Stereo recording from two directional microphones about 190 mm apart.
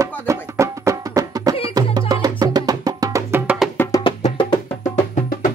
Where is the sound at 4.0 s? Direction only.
25° left (ahead or behind).